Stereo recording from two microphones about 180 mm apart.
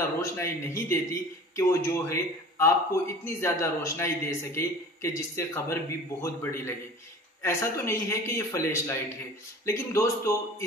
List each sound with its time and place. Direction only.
0.2 s a man's voice: 15° left (ahead or behind)